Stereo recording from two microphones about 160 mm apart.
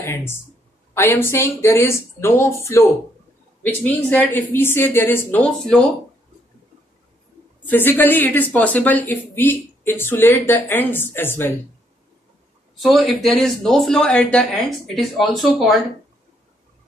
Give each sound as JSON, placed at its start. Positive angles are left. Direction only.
{"t": 0.0, "sound": "a woman's voice", "side_deg": 15}
{"t": 7.6, "sound": "a woman's voice", "side_deg": 10}
{"t": 12.8, "sound": "speech", "side_deg": 0}